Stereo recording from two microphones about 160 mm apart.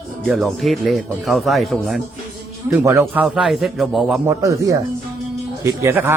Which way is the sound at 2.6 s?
20° right (ahead or behind).